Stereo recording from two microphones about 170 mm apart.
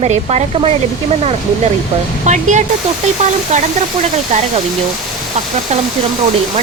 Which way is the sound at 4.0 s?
40° right (ahead or behind).